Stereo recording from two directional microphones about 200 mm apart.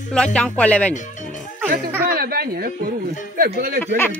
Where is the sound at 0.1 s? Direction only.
5° left (ahead or behind).